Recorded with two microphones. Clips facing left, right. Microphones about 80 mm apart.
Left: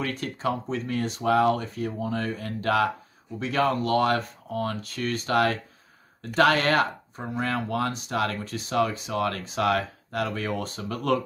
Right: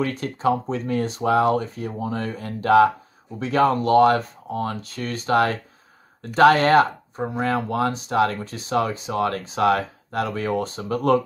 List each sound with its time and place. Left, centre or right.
0.0 s speech: right